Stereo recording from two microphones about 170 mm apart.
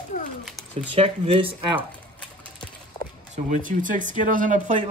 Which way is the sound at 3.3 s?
50° right (ahead or behind).